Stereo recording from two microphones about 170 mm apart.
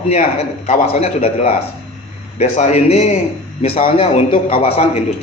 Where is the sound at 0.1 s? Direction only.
40° left (ahead or behind).